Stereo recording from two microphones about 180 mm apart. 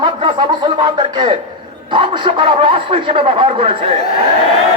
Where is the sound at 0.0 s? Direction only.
25° right (ahead or behind).